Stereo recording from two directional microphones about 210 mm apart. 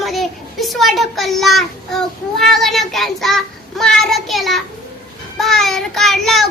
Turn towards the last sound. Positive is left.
turn(degrees=0)  # may be behind; listen again after turning